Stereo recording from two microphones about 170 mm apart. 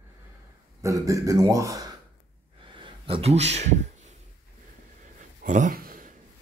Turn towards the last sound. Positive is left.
turn(degrees=-55)  # may be behind; listen again after turning